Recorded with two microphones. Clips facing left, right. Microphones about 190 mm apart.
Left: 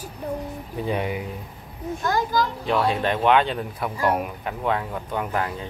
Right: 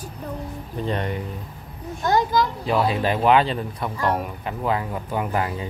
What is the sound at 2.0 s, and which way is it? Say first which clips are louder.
Speech: right 3 dB; 20° right (ahead or behind).